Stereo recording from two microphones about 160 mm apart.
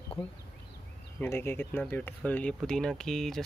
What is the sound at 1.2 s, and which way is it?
Speech, 15° left (ahead or behind).